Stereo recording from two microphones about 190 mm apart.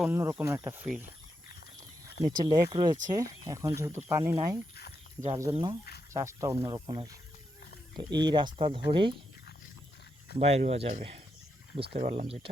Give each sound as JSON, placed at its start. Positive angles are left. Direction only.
{"t": 0.0, "sound": "speech", "side_deg": -10}
{"t": 2.2, "sound": "speech", "side_deg": -20}
{"t": 4.7, "sound": "speech", "side_deg": 55}
{"t": 5.3, "sound": "speech", "side_deg": -20}
{"t": 10.3, "sound": "speech", "side_deg": -35}